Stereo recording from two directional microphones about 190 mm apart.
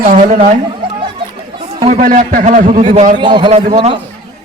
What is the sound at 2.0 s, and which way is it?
A man's voice, 45° right (ahead or behind).